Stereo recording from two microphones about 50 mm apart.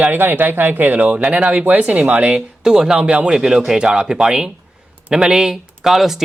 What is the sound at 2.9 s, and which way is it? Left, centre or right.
A woman's voice, right.